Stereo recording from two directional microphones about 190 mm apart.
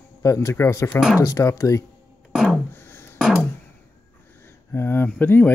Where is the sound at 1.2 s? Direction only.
15° left (ahead or behind).